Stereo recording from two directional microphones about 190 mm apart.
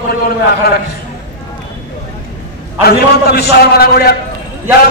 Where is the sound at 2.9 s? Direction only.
55° left (ahead or behind).